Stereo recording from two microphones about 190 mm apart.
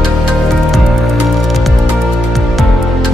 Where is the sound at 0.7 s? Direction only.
Centre (ahead or behind).